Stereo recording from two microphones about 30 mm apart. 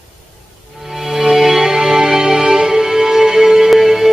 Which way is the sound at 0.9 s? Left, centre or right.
Centre.